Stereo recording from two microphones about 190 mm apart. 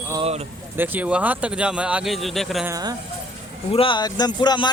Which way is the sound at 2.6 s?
20° right (ahead or behind).